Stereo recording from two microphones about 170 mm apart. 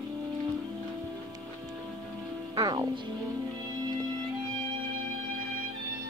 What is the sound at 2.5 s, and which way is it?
Music, 20° right (ahead or behind).